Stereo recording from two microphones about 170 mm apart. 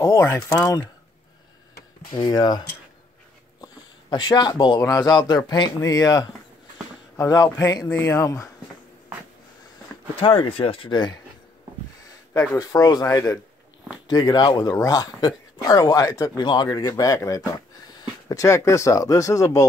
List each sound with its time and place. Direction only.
0.0 s speech: 15° left (ahead or behind)
2.1 s speech: 25° left (ahead or behind)
3.6 s speech: 25° left (ahead or behind)
9.9 s a sound: 15° left (ahead or behind)
10.2 s speech: 30° left (ahead or behind)
12.4 s speech: 20° left (ahead or behind)